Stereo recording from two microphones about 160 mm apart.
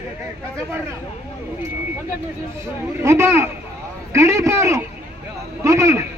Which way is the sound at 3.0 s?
15° right (ahead or behind).